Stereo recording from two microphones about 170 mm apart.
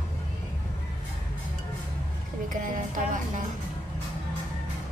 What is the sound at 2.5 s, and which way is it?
Speech, 50° right (ahead or behind).